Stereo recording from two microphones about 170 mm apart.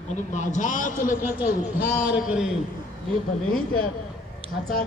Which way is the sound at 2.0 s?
5° right (ahead or behind).